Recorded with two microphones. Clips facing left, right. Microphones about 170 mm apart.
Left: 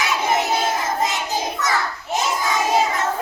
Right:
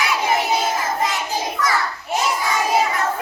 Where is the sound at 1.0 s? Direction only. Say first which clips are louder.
Even; 25° left (ahead or behind).